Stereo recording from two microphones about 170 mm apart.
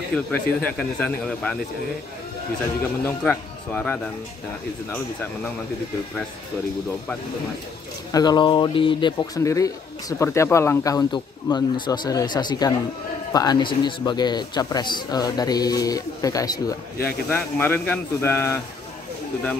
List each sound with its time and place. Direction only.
0.1 s speech: 10° left (ahead or behind)
3.3 s speech: 5° left (ahead or behind)
8.1 s a man's voice: 25° left (ahead or behind)